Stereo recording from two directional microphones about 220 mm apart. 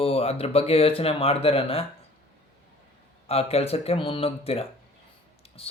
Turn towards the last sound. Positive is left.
turn(degrees=25)  # may be behind; listen again after turning